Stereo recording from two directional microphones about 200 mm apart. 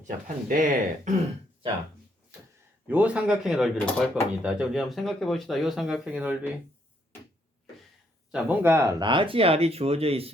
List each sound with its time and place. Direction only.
0.4 s speech: 45° right (ahead or behind)
2.8 s speech: 5° right (ahead or behind)
8.3 s speech: 10° right (ahead or behind); by 10.3 s 30° right (ahead or behind)